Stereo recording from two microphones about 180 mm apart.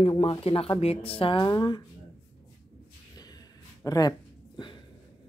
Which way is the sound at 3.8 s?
20° left (ahead or behind).